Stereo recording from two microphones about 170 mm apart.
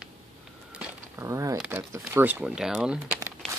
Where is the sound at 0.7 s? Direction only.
10° right (ahead or behind).